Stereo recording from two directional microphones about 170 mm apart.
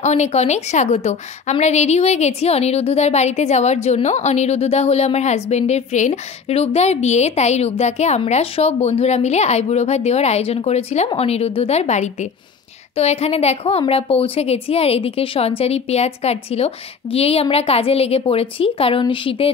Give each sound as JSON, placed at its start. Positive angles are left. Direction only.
{"t": 0.0, "sound": "a woman's voice", "side_deg": 40}